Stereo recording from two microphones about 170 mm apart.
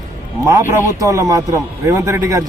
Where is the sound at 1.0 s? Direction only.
20° right (ahead or behind).